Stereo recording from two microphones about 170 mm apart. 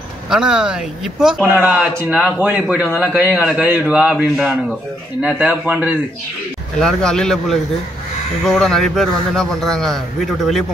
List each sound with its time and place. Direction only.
0.3 s speech: 5° right (ahead or behind)
6.8 s a man's voice: 5° left (ahead or behind)